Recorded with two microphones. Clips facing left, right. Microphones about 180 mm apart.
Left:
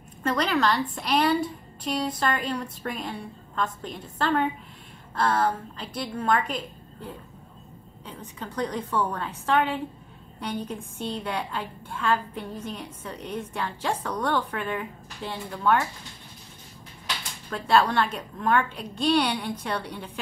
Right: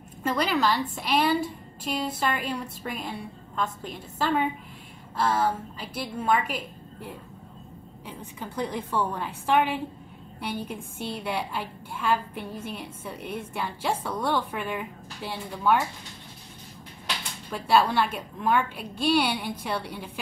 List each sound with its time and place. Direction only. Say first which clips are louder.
0.2 s a woman's voice: left 1 dB; 5° right (ahead or behind)
17.5 s a woman's voice: even; 10° right (ahead or behind)